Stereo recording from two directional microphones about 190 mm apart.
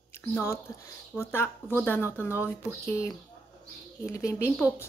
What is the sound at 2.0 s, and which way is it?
Speech, 10° right (ahead or behind).